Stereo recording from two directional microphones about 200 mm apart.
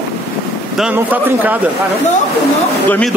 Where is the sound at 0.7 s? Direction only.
5° right (ahead or behind).